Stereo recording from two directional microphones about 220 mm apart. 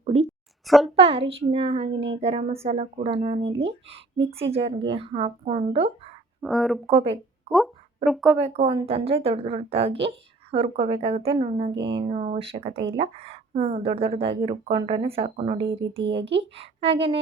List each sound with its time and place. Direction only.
0.0 s a sound: 30° right (ahead or behind)
0.7 s speech: centre (ahead or behind)
0.9 s speech: 25° right (ahead or behind)
1.9 s a sound: 55° right (ahead or behind)
2.2 s speech: 25° right (ahead or behind)
6.4 s speech: centre (ahead or behind)
6.8 s speech: 25° right (ahead or behind)
8.0 s speech: centre (ahead or behind)
8.4 s speech: 30° right (ahead or behind)
11.7 s speech: 55° right (ahead or behind)
11.9 s speech: 25° right (ahead or behind)
15.5 s speech: 55° right (ahead or behind)
16.6 s speech: 25° right (ahead or behind)